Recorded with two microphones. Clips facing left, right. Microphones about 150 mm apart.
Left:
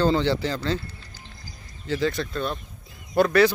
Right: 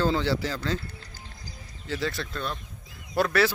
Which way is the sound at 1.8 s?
Centre (ahead or behind).